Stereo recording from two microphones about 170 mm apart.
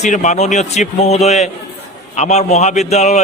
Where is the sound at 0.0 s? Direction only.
45° left (ahead or behind).